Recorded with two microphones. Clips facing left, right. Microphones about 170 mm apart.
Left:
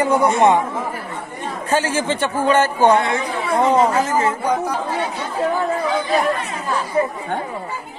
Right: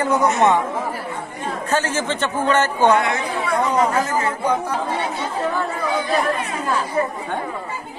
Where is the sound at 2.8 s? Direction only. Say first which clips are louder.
Even; 30° left (ahead or behind).